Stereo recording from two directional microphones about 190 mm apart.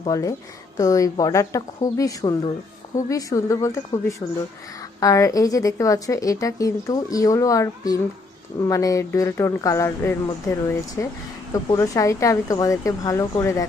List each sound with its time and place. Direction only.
0.0 s a woman's voice: 20° left (ahead or behind)